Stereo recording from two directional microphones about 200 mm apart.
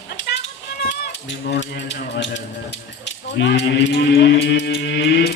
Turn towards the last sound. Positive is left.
turn(degrees=55)  # may be behind; listen again after turning